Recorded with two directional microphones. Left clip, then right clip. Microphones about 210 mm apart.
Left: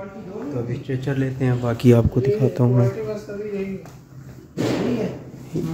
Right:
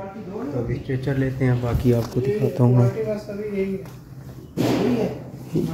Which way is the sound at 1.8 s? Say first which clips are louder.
Left 5 dB; 50° left (ahead or behind).